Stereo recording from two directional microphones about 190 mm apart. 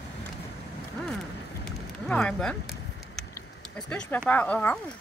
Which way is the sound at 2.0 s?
5° left (ahead or behind).